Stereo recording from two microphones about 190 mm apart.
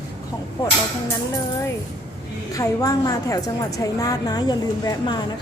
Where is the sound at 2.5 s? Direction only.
20° left (ahead or behind).